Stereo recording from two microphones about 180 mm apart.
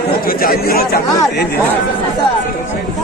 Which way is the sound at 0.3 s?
55° left (ahead or behind).